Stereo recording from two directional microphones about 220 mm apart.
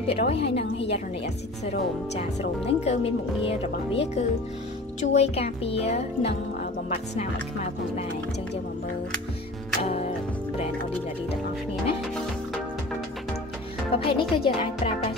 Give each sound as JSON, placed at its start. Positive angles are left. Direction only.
{"t": 0.0, "sound": "speech", "side_deg": 25}
{"t": 9.8, "sound": "music", "side_deg": 30}
{"t": 13.9, "sound": "speech", "side_deg": 25}